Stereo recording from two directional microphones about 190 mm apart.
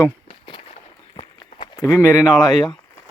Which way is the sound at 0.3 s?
25° left (ahead or behind).